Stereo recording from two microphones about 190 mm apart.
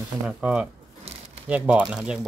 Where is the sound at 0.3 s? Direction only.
5° right (ahead or behind).